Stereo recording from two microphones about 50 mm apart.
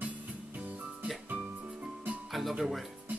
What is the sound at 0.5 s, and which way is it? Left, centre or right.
Music, right.